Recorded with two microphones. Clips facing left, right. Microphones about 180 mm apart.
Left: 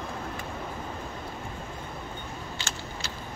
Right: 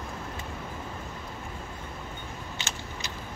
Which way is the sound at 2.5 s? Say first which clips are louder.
Left 1 dB; 20° right (ahead or behind).